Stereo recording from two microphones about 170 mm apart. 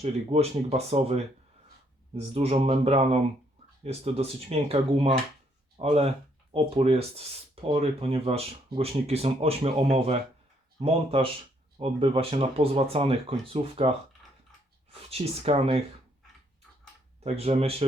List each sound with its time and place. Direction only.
0.0 s speech: 40° right (ahead or behind)
15.1 s speech: 35° right (ahead or behind)
17.2 s speech: 35° right (ahead or behind)